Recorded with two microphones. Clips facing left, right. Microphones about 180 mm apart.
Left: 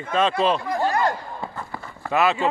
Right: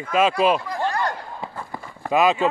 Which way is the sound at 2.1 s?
15° right (ahead or behind).